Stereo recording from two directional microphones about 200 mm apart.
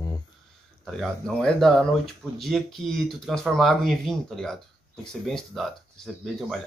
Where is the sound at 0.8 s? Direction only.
Centre (ahead or behind).